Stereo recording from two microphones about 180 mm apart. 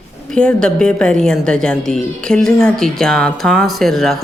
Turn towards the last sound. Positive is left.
turn(degrees=0)  # may be behind; listen again after turning